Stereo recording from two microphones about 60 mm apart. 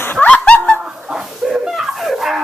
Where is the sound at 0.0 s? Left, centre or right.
Left.